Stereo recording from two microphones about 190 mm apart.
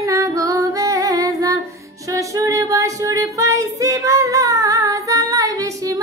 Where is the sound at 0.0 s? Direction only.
15° right (ahead or behind).